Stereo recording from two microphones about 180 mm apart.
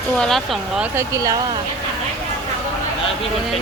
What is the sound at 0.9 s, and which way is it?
Speech, 20° right (ahead or behind).